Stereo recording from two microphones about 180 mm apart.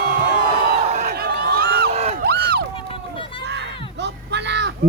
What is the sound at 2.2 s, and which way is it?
Crowd, 60° right (ahead or behind).